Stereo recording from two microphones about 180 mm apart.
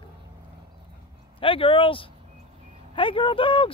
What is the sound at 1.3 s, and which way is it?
Speech, 30° left (ahead or behind).